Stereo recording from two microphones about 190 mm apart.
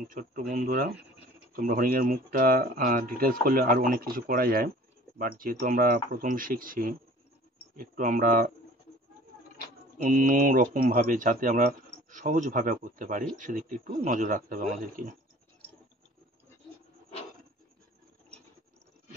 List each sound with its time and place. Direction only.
0.1 s speech: 45° right (ahead or behind)
9.9 s speech: 45° right (ahead or behind)